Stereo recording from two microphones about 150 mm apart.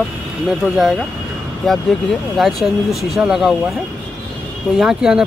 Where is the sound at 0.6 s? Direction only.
10° left (ahead or behind).